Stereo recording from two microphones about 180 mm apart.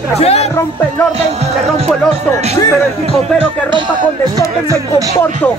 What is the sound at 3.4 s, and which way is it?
Speech, 25° right (ahead or behind).